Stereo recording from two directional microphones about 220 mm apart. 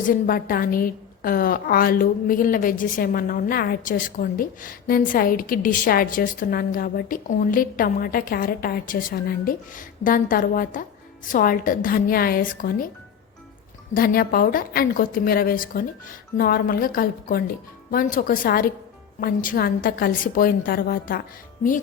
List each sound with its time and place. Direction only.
0.0 s a woman's voice: 40° left (ahead or behind)
13.9 s a woman's voice: 40° left (ahead or behind)